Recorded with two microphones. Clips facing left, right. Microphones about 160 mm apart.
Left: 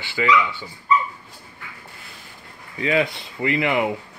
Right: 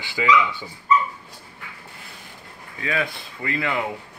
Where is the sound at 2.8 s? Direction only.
20° left (ahead or behind).